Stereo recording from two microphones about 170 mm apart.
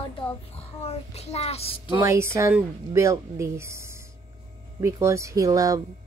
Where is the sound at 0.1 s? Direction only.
35° left (ahead or behind).